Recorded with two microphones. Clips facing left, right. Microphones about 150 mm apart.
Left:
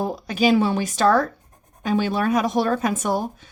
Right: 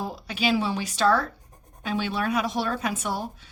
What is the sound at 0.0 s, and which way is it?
A woman's voice, 45° left (ahead or behind).